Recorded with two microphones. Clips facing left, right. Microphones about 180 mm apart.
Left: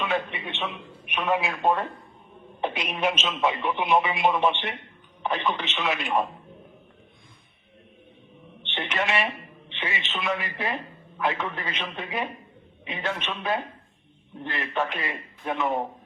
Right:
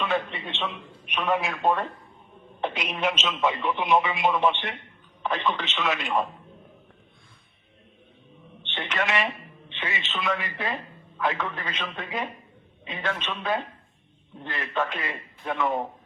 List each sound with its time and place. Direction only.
0.0 s a man's voice: 15° left (ahead or behind)
1.5 s a man's voice: 20° left (ahead or behind)
8.7 s telephone: 15° left (ahead or behind)
9.7 s a man's voice: 15° left (ahead or behind)
14.4 s a man's voice: 20° left (ahead or behind)